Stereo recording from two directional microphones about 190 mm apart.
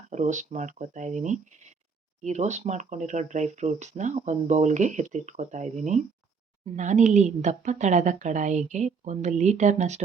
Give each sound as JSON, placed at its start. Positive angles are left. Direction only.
{"t": 0.1, "sound": "speech", "side_deg": -40}